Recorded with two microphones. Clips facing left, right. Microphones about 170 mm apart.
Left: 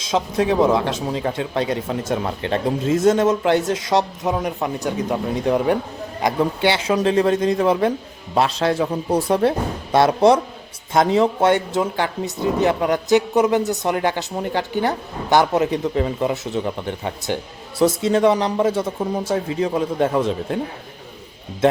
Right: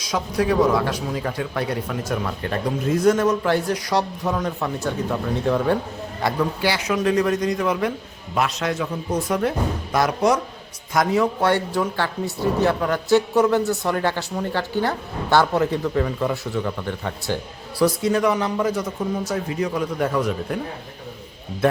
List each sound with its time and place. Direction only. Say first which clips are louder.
0.0 s a man's voice: left 3 dB; 25° left (ahead or behind)